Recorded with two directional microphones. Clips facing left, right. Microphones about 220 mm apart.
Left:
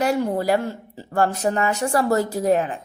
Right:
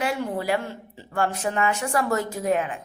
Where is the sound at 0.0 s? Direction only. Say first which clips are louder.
Left 5 dB; 40° left (ahead or behind).